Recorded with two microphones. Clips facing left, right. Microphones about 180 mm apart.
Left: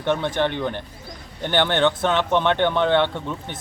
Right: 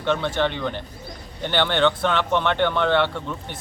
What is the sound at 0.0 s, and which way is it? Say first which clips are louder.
Speech: left 1 dB; 15° left (ahead or behind).